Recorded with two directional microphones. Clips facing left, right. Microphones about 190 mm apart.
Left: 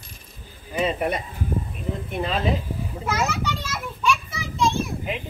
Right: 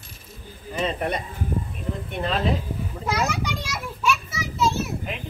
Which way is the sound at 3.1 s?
15° right (ahead or behind).